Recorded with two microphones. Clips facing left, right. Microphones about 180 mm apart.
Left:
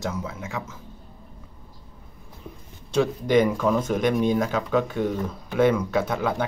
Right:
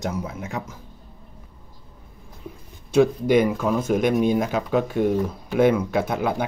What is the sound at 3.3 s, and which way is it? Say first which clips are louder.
Speech: right 1 dB; 10° right (ahead or behind).